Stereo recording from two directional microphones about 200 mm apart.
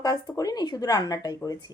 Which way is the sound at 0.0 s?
20° left (ahead or behind).